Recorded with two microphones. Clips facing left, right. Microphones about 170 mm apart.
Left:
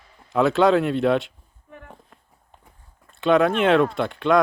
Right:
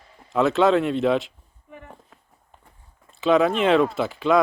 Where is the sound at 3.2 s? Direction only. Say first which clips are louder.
Left 1 dB; centre (ahead or behind).